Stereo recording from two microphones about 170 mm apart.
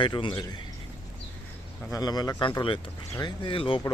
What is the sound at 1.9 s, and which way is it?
Speech, 25° left (ahead or behind).